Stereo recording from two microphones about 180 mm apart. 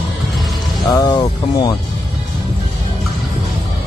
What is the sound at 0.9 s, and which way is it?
Music, 25° left (ahead or behind).